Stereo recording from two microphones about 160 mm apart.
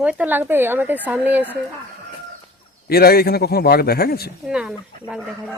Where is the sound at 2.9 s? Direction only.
75° left (ahead or behind).